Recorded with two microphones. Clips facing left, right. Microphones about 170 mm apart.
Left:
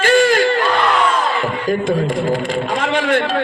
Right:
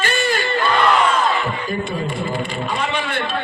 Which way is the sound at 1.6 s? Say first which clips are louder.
Left 7 dB; 90° left.